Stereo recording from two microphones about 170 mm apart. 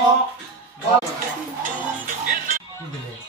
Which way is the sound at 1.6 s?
50° right (ahead or behind).